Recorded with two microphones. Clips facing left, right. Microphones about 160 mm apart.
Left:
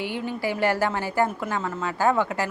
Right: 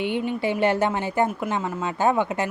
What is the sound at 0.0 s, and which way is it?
A woman's voice, 20° right (ahead or behind).